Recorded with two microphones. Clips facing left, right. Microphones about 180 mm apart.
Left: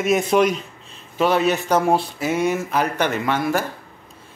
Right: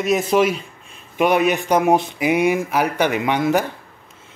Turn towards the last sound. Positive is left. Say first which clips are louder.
# right 3 dB
turn(degrees=-15)  # may be behind; listen again after turning